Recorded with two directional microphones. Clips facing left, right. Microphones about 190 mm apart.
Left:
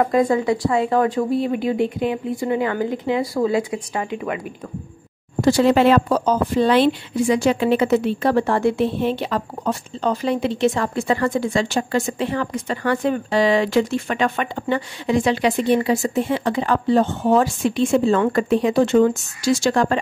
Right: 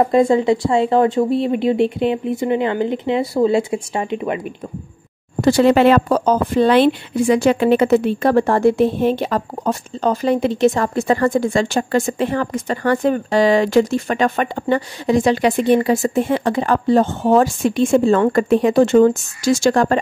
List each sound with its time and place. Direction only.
0.0 s a woman's voice: 25° right (ahead or behind)
5.4 s a woman's voice: 60° right (ahead or behind); by 20.0 s 45° right (ahead or behind)